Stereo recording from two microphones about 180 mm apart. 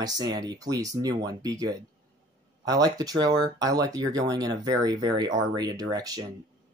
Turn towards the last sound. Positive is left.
turn(degrees=-20)  # may be behind; listen again after turning